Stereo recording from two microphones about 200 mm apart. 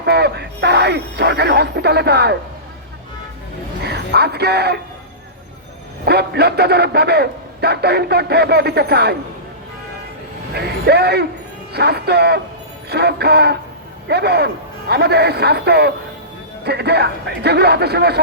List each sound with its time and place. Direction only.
0.0 s speech: 55° right (ahead or behind)
3.8 s a man's voice: 55° right (ahead or behind)
6.1 s a man's voice: 55° right (ahead or behind)
10.5 s a man's voice: 55° right (ahead or behind)